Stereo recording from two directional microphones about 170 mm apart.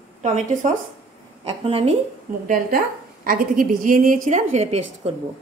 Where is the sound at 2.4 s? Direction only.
50° right (ahead or behind).